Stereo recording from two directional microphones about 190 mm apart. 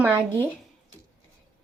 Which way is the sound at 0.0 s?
10° right (ahead or behind).